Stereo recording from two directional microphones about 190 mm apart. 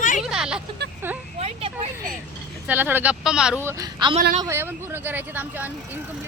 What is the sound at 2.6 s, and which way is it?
Speech, 10° right (ahead or behind).